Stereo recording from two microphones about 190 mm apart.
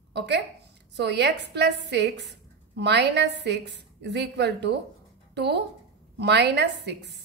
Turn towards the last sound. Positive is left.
turn(degrees=-60)  # may be behind; listen again after turning